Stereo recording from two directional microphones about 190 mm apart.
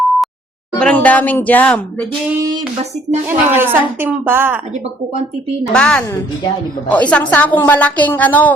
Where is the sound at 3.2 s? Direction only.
10° right (ahead or behind).